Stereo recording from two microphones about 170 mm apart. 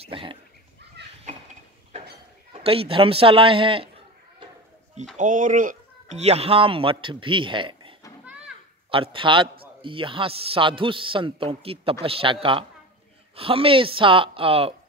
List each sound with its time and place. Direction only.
0.0 s a man's voice: 30° right (ahead or behind)
2.6 s a man's voice: 35° right (ahead or behind)
5.1 s a man's voice: 50° right (ahead or behind); by 7.9 s 30° right (ahead or behind)
8.9 s a man's voice: 30° right (ahead or behind)